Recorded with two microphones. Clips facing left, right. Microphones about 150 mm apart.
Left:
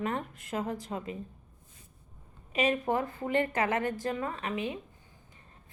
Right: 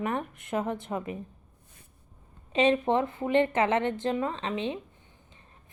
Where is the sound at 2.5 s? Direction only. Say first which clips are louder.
Right 5 dB; 30° right (ahead or behind).